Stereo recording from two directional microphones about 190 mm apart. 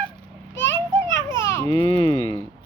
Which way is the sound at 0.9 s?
15° left (ahead or behind).